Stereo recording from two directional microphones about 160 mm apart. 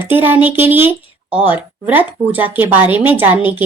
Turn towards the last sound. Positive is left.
turn(degrees=-10)  # may be behind; listen again after turning